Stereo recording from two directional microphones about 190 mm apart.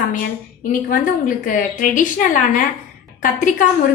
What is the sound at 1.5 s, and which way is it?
A woman's voice, 45° left (ahead or behind).